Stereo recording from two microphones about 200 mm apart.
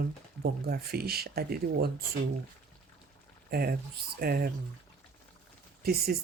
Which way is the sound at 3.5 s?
50° right (ahead or behind).